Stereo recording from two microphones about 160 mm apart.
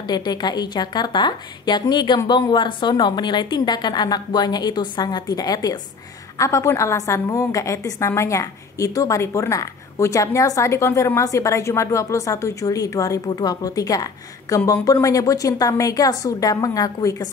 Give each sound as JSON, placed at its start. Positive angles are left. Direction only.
{"t": 0.0, "sound": "a woman's voice", "side_deg": 25}